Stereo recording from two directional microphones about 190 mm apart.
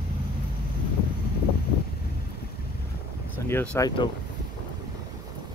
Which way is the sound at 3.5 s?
10° left (ahead or behind).